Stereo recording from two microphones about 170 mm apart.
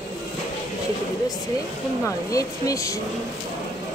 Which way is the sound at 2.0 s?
20° left (ahead or behind).